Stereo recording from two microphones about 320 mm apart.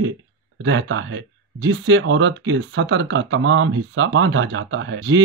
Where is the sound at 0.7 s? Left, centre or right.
Right.